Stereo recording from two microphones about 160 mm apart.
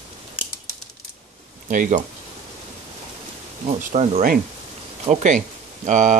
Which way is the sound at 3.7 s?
45° right (ahead or behind).